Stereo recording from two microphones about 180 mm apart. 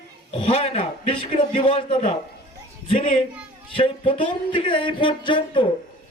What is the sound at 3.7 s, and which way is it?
A man's voice, 30° left (ahead or behind).